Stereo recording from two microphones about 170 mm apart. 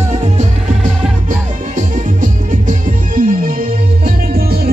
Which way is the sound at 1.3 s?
50° right (ahead or behind).